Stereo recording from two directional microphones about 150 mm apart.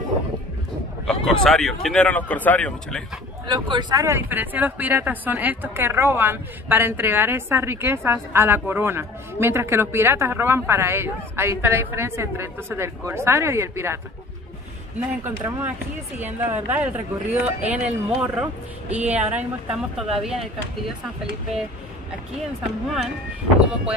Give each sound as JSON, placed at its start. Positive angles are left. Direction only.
{"t": 1.0, "sound": "a man's voice", "side_deg": 5}
{"t": 3.4, "sound": "speech", "side_deg": -30}
{"t": 15.0, "sound": "speech", "side_deg": -10}